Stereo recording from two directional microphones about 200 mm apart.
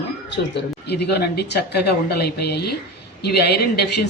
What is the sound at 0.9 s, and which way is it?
Speech, 55° left (ahead or behind).